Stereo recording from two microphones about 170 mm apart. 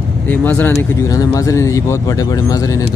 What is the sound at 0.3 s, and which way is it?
Speech, 10° left (ahead or behind).